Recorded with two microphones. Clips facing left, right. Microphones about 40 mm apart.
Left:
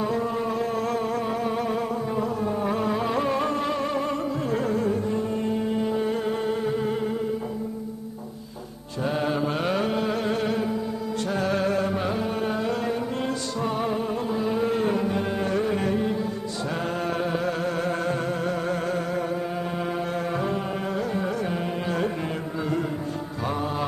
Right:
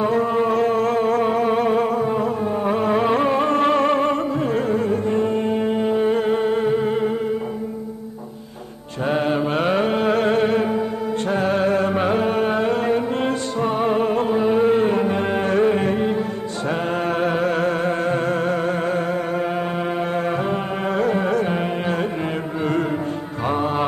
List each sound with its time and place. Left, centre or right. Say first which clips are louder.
0.0 s a sound: right 7 dB; right
9.0 s music: right 5 dB; right
13.9 s music: right 8 dB; right
14.4 s music: right 7 dB; right
20.2 s music: right 5 dB; right
21.0 s carnatic music: right 11 dB; right
23.4 s music: right 7 dB; right